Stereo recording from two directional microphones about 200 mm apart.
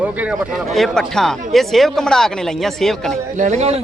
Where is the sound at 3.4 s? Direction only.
35° right (ahead or behind).